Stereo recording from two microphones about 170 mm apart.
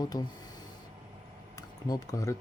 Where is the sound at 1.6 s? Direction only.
20° left (ahead or behind).